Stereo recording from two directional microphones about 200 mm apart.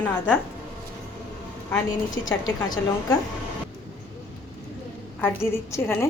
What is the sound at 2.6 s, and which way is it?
Speech, 20° left (ahead or behind).